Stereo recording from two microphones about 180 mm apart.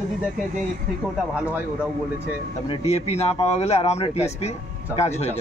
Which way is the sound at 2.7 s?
35° left (ahead or behind).